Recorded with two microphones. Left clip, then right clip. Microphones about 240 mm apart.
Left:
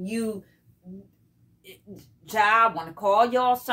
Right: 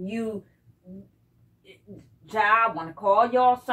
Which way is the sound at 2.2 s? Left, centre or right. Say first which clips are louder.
Left 1 dB; left.